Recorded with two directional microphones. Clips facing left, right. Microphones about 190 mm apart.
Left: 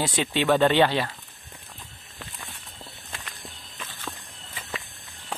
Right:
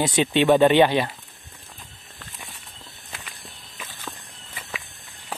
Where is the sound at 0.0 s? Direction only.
20° right (ahead or behind).